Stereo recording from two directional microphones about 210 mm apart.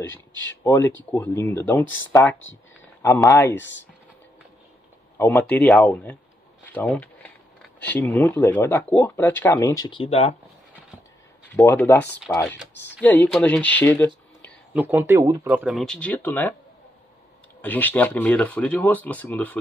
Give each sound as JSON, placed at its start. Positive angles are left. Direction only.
{"t": 0.7, "sound": "speech", "side_deg": 15}
{"t": 2.8, "sound": "a sound", "side_deg": 15}
{"t": 3.3, "sound": "speech", "side_deg": 15}
{"t": 3.5, "sound": "speech", "side_deg": 60}
{"t": 5.1, "sound": "speech", "side_deg": 10}
{"t": 6.7, "sound": "a sound", "side_deg": 5}
{"t": 7.9, "sound": "speech", "side_deg": 10}
{"t": 11.5, "sound": "speech", "side_deg": 10}
{"t": 14.7, "sound": "speech", "side_deg": -10}
{"t": 17.6, "sound": "speech", "side_deg": 10}